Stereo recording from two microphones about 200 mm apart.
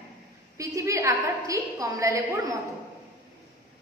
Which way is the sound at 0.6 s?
15° right (ahead or behind).